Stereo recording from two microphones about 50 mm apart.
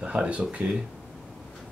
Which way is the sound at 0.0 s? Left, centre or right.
Right.